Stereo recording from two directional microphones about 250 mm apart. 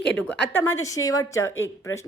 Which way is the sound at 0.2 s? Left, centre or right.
Centre.